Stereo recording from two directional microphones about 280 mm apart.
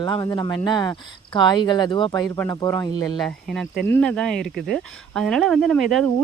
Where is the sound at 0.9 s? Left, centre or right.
Centre.